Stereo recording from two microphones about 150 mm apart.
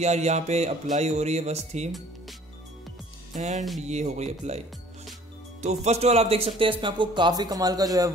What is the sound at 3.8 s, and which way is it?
Speech, 50° right (ahead or behind).